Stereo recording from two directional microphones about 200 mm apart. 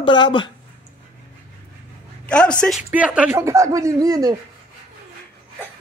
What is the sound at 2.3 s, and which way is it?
Speech, 5° left (ahead or behind).